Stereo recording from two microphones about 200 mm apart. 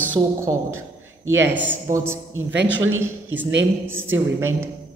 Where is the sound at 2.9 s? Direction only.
70° right (ahead or behind).